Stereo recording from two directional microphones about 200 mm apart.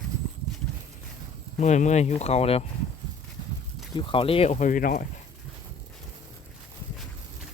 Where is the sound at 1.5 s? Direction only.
35° left (ahead or behind).